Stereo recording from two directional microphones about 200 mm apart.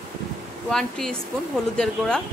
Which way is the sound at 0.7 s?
5° left (ahead or behind).